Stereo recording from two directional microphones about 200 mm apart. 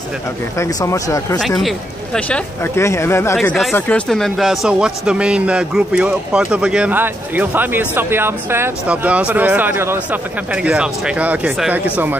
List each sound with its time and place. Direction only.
0.6 s speech: 15° left (ahead or behind)
1.6 s speech: 5° left (ahead or behind)
3.3 s a man's voice: centre (ahead or behind)